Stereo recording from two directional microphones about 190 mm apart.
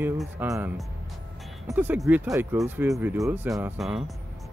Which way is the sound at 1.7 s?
10° right (ahead or behind).